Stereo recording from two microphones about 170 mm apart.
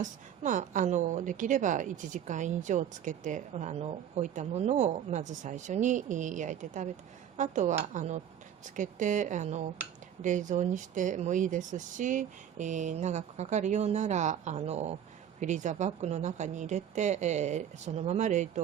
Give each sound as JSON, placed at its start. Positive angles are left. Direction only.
{"t": 0.0, "sound": "a woman's voice", "side_deg": -50}